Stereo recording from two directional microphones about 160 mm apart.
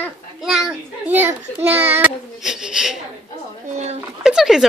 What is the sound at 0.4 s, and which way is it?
A child's voice, 5° right (ahead or behind).